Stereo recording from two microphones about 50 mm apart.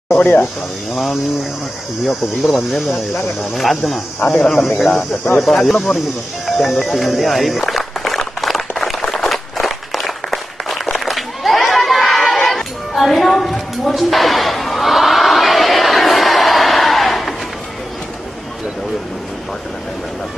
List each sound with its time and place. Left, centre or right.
0.2 s speech: left
2.0 s speech: centre
6.9 s run: centre